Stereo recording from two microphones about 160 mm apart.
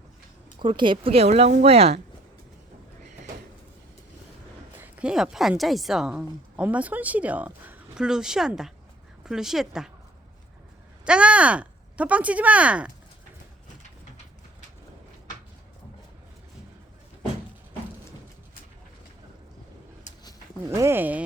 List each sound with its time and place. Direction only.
0.6 s a woman's voice: 30° right (ahead or behind)
4.8 s a woman's voice: 5° right (ahead or behind)
11.0 s speech: 5° right (ahead or behind)
20.7 s speech: 15° right (ahead or behind)